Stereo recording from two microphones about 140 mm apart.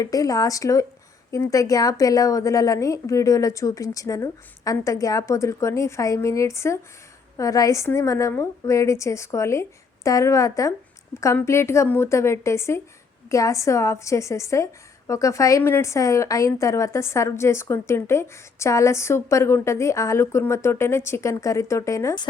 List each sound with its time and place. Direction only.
0.0 s a woman's voice: 25° left (ahead or behind)